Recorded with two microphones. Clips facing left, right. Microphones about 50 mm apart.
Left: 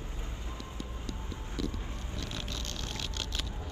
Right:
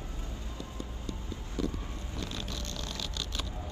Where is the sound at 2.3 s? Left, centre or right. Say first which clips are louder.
Right 1 dB; left.